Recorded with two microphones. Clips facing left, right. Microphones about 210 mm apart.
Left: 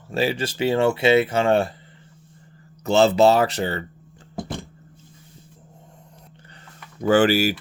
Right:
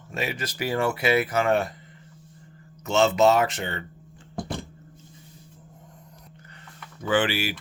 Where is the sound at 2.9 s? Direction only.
35° left (ahead or behind).